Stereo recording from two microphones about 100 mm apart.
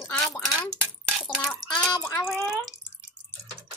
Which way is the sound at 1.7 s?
10° left (ahead or behind).